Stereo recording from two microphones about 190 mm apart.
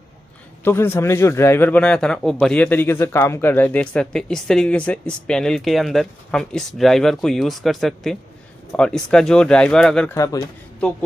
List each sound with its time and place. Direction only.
0.7 s a man's voice: 10° left (ahead or behind)
10.1 s a man's voice: 15° left (ahead or behind)